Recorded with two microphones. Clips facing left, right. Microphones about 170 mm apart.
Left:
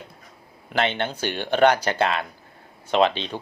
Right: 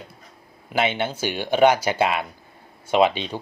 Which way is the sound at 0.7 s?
10° right (ahead or behind).